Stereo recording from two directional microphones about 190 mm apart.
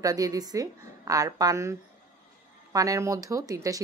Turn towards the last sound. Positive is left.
turn(degrees=-15)  # may be behind; listen again after turning